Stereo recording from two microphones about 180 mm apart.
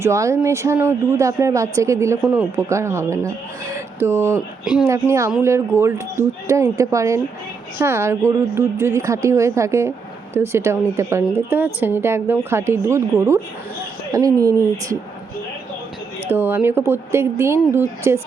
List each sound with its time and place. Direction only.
0.0 s a woman's voice: 15° right (ahead or behind)
4.6 s speech: 5° right (ahead or behind)
4.9 s a woman's voice: 15° right (ahead or behind)
16.3 s a woman's voice: 10° right (ahead or behind)